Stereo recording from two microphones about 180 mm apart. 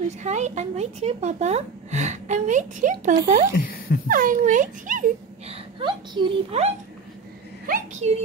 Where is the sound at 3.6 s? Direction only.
55° left (ahead or behind).